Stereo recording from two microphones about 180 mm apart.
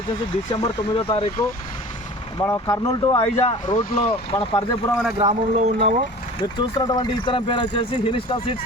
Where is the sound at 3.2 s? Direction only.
35° left (ahead or behind).